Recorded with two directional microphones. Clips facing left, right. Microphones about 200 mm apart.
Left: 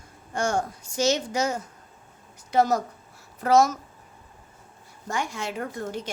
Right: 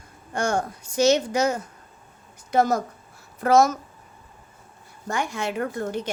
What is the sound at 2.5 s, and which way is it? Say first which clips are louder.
A woman's voice: right 1 dB; 50° right (ahead or behind).